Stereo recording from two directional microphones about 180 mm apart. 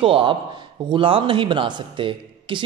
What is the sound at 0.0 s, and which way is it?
Speech, 30° right (ahead or behind).